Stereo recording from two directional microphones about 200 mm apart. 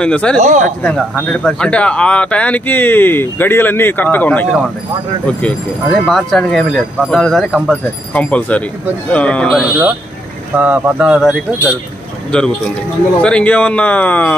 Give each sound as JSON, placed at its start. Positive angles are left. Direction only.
{"t": 0.0, "sound": "speech", "side_deg": 5}
{"t": 0.4, "sound": "speech", "side_deg": -35}
{"t": 0.8, "sound": "speech", "side_deg": 5}
{"t": 10.6, "sound": "speech", "side_deg": -5}